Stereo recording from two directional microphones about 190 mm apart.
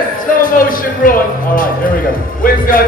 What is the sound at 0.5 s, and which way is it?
A man's voice, 50° left (ahead or behind).